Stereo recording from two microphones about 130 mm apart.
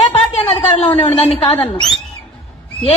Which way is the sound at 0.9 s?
50° left (ahead or behind).